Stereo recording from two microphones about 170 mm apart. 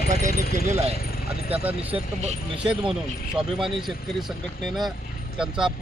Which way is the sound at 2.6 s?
5° right (ahead or behind).